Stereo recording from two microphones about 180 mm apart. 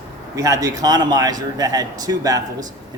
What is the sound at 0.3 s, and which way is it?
A man's voice, 20° right (ahead or behind).